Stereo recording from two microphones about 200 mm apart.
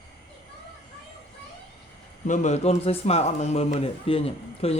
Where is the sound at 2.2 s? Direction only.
35° left (ahead or behind).